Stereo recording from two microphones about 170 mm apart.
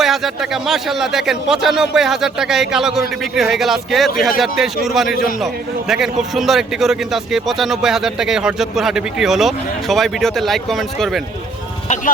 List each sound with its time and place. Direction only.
0.0 s a man's voice: centre (ahead or behind)